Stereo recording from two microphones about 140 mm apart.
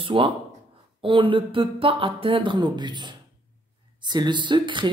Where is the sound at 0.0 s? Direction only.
40° right (ahead or behind).